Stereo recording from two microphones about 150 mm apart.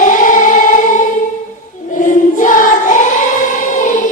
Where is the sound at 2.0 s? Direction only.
60° left (ahead or behind).